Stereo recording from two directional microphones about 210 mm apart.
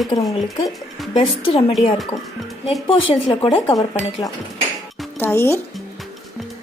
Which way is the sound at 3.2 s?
20° left (ahead or behind).